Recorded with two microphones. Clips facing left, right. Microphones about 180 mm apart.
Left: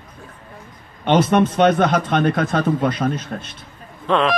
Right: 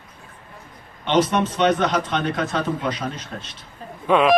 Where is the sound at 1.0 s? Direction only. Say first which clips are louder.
Left 4 dB; 55° left (ahead or behind).